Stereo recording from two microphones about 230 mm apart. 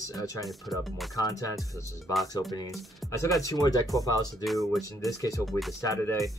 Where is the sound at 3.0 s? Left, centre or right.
Centre.